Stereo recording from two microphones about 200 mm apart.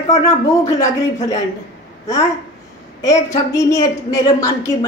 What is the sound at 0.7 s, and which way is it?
Speech, 15° left (ahead or behind).